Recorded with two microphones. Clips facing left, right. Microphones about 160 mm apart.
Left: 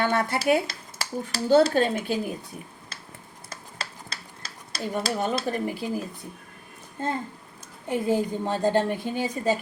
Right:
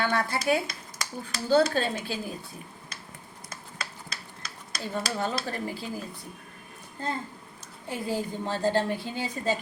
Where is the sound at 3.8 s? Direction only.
30° left (ahead or behind).